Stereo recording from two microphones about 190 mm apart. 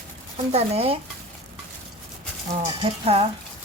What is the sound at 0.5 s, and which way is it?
Speech, 30° right (ahead or behind).